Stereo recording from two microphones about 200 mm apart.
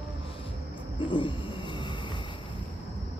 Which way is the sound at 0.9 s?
25° left (ahead or behind).